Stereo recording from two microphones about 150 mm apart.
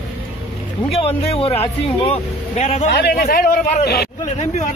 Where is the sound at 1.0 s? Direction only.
40° left (ahead or behind).